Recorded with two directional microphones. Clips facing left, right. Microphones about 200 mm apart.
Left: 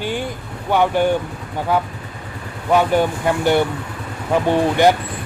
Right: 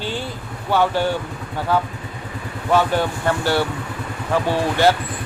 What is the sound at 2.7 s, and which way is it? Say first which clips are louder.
Speech: left 3 dB; 15° left (ahead or behind).